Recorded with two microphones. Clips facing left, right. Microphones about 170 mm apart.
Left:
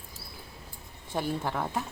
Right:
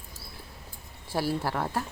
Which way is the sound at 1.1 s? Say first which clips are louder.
Right 2 dB; 5° right (ahead or behind).